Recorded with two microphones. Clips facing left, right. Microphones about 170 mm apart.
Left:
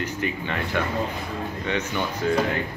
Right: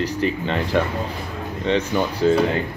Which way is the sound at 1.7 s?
35° right (ahead or behind).